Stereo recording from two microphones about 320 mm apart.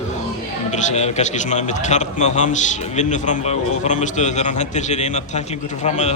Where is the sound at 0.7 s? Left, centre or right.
Left.